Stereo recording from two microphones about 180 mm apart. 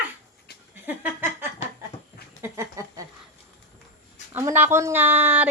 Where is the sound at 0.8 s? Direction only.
10° right (ahead or behind).